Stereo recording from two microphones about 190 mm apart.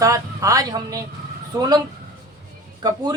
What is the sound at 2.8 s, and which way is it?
Speech, 20° right (ahead or behind).